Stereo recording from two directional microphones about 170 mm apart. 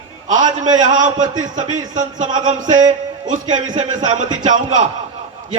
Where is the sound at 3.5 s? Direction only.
45° right (ahead or behind).